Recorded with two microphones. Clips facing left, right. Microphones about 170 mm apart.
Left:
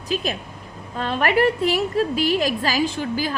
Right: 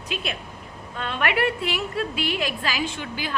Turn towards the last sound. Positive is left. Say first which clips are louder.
# left 5 dB
turn(degrees=40)  # may be behind; listen again after turning